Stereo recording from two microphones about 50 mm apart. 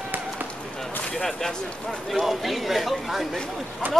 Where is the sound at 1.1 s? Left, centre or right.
Centre.